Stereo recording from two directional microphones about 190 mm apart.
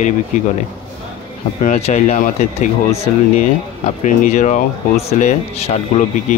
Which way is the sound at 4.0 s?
40° left (ahead or behind).